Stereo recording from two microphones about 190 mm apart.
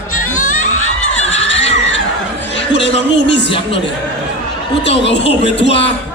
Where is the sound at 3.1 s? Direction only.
65° left (ahead or behind).